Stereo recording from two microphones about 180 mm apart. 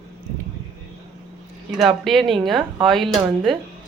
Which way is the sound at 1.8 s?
Centre (ahead or behind).